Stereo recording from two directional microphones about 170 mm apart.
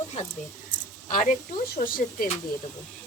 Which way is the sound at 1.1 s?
55° left (ahead or behind).